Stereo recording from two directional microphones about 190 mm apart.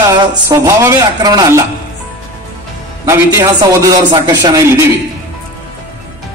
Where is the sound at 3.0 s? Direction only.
15° right (ahead or behind).